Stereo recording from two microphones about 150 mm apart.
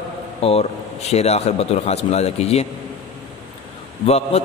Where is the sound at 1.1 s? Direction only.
45° left (ahead or behind).